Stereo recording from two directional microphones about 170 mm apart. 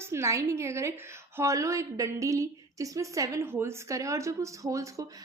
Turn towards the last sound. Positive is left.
turn(degrees=-20)  # may be behind; listen again after turning